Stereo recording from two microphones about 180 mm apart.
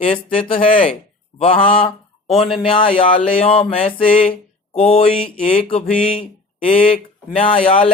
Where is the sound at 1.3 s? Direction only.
30° left (ahead or behind).